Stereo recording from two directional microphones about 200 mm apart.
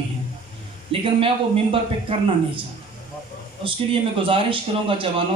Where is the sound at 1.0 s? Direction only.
25° right (ahead or behind).